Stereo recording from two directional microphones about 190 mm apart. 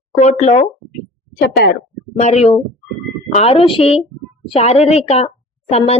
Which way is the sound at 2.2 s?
35° left (ahead or behind).